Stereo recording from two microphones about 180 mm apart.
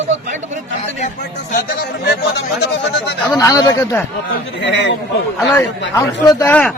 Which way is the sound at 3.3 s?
20° left (ahead or behind).